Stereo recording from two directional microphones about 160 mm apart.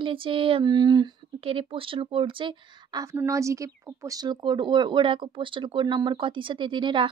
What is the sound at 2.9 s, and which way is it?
Speech, 20° right (ahead or behind).